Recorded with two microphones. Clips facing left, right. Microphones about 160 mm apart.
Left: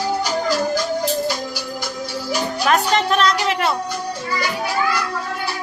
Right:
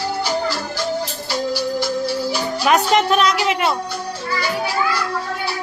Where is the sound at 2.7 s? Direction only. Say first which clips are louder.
Right 2 dB; centre (ahead or behind).